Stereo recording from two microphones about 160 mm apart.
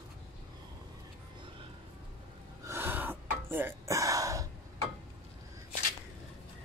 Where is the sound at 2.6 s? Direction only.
15° right (ahead or behind).